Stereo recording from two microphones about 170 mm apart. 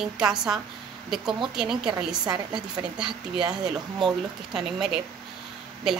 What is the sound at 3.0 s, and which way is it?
Speech, 5° right (ahead or behind).